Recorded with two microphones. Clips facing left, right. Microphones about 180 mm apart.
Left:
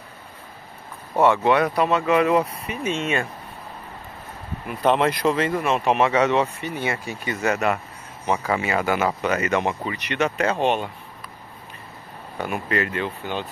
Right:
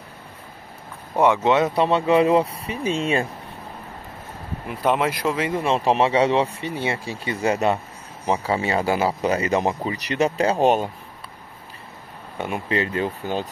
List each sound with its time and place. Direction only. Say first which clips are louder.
1.1 s speech: even; 15° right (ahead or behind); by 3.3 s 35° right (ahead or behind)
4.8 s speech: left 2 dB; 5° right (ahead or behind)
5.5 s speech: right 1 dB; 30° right (ahead or behind)
12.4 s speech: even; 25° right (ahead or behind)